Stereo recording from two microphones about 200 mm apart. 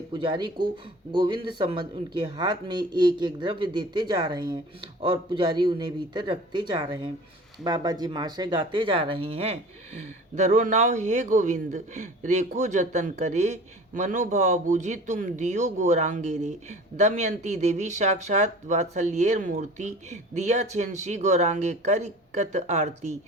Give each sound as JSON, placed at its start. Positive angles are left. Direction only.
{"t": 0.1, "sound": "speech", "side_deg": -25}